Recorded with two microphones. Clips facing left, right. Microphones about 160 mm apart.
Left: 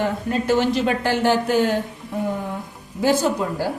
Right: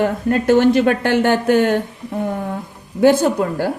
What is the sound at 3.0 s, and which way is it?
Speech, 60° right (ahead or behind).